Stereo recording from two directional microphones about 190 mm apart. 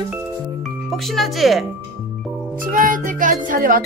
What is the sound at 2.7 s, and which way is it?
Music, 45° right (ahead or behind).